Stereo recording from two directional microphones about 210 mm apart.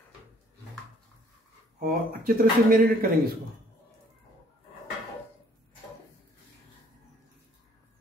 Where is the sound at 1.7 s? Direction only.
45° right (ahead or behind).